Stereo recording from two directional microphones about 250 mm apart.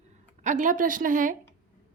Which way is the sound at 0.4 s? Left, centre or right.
Right.